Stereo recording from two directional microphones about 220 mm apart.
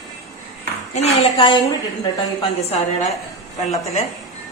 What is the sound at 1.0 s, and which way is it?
Speech, 25° left (ahead or behind).